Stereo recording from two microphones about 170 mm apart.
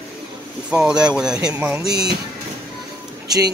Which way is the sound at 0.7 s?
5° right (ahead or behind).